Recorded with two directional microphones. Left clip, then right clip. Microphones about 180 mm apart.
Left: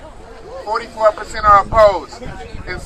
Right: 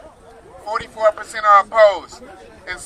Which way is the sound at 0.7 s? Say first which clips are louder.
Left 2 dB; 15° right (ahead or behind).